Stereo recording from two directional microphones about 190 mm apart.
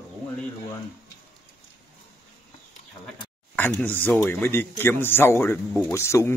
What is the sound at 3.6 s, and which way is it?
Speech, 10° left (ahead or behind).